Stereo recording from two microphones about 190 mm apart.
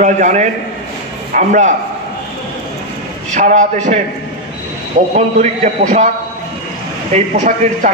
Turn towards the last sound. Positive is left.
turn(degrees=-40)  # may be behind; listen again after turning